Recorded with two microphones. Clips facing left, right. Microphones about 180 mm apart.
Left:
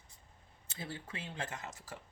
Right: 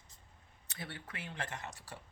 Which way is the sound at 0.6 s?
25° left (ahead or behind).